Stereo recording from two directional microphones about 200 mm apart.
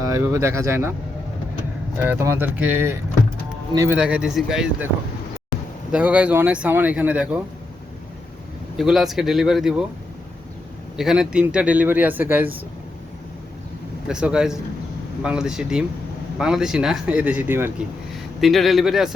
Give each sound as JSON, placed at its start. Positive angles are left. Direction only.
{"t": 0.0, "sound": "speech", "side_deg": -15}
{"t": 2.0, "sound": "speech", "side_deg": -10}
{"t": 3.9, "sound": "speech", "side_deg": -5}
{"t": 5.9, "sound": "speech", "side_deg": -5}
{"t": 8.7, "sound": "speech", "side_deg": 0}
{"t": 10.9, "sound": "speech", "side_deg": -5}
{"t": 14.1, "sound": "speech", "side_deg": -5}